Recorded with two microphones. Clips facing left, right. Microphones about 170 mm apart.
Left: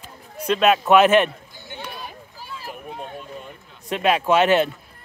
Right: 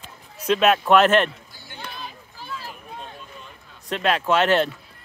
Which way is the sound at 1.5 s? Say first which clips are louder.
Left 4 dB; 20° left (ahead or behind).